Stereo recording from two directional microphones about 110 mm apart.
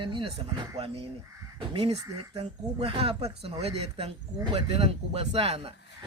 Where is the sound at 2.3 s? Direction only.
65° right (ahead or behind).